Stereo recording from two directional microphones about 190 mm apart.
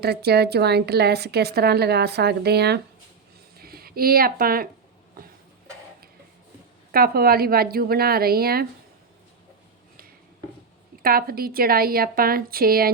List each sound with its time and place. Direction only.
0.0 s a woman's voice: 60° right (ahead or behind)
6.9 s a woman's voice: 50° right (ahead or behind)
11.0 s a woman's voice: 50° right (ahead or behind)